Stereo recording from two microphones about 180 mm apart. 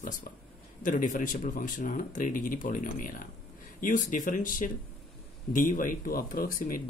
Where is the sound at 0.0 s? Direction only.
45° left (ahead or behind).